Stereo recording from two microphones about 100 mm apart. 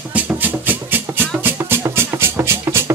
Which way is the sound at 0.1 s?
20° right (ahead or behind).